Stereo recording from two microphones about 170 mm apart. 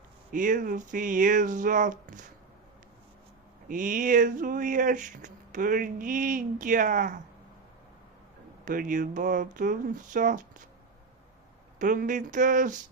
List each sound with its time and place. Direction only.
0.3 s speech: 50° right (ahead or behind)
3.7 s speech: 50° right (ahead or behind)
8.6 s speech: 50° right (ahead or behind)
11.8 s speech: 50° right (ahead or behind)